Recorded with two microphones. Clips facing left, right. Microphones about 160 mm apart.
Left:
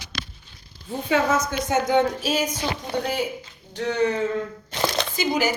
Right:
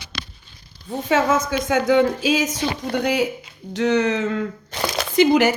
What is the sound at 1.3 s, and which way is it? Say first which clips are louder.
A woman's voice: right 3 dB; 75° right (ahead or behind).